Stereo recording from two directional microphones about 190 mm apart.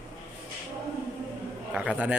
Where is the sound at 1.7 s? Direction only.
5° right (ahead or behind).